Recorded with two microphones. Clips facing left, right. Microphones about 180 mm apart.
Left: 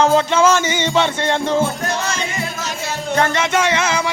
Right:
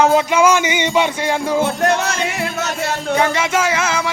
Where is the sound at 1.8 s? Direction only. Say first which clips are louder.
Right 5 dB; 65° right (ahead or behind).